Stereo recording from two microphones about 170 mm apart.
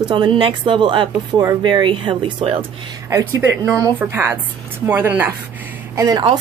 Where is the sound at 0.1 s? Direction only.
30° right (ahead or behind).